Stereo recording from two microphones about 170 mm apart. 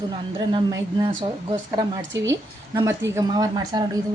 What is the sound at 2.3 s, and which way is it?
A woman's voice, 20° right (ahead or behind).